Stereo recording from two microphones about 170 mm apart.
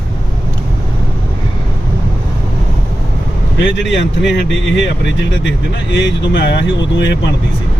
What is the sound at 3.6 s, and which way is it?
Speech, 90° left.